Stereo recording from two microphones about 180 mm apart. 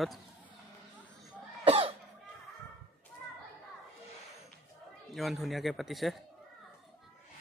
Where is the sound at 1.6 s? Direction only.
30° right (ahead or behind).